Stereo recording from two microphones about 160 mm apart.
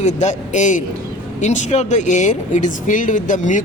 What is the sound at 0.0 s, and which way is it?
Speech, 45° left (ahead or behind).